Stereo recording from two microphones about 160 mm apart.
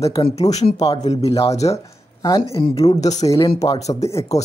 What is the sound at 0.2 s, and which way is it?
Speech, 40° left (ahead or behind).